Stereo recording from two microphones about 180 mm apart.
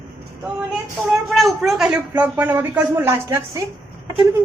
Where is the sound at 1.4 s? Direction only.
Centre (ahead or behind); by 3.6 s 20° right (ahead or behind).